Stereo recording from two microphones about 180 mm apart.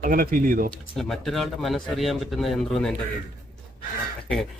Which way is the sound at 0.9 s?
Centre (ahead or behind).